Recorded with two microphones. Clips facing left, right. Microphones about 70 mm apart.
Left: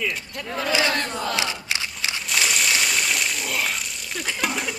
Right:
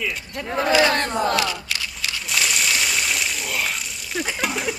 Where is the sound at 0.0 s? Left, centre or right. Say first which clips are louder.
Even; centre.